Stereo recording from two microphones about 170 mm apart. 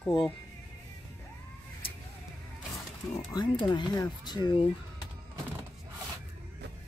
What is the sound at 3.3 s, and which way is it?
Speech, 25° left (ahead or behind).